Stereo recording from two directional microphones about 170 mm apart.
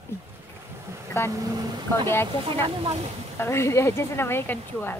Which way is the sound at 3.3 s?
15° left (ahead or behind).